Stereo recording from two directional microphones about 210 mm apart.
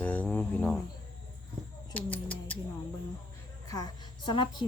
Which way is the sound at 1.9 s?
10° left (ahead or behind).